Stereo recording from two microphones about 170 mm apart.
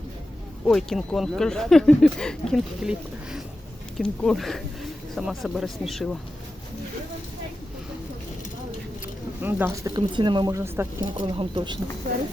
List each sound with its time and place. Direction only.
0.6 s speech: 5° left (ahead or behind)
3.9 s speech: 5° left (ahead or behind)
9.4 s speech: 10° right (ahead or behind)
9.9 s a woman's voice: 25° right (ahead or behind)
11.2 s a woman's voice: 30° right (ahead or behind)